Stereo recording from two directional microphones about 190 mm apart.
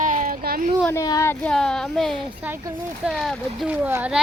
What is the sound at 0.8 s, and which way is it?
Speech, 15° left (ahead or behind).